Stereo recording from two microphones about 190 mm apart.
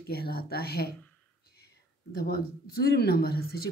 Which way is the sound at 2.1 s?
55° left (ahead or behind).